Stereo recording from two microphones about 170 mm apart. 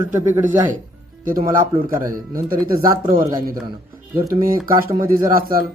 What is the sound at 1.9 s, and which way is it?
Speech, 20° right (ahead or behind).